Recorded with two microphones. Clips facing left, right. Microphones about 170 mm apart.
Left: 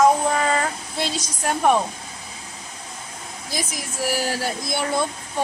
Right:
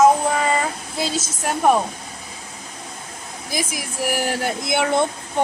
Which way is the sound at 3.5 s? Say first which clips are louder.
Right 3 dB; 10° right (ahead or behind).